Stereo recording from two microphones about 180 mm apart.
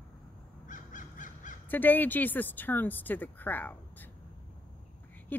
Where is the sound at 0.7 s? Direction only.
45° left (ahead or behind).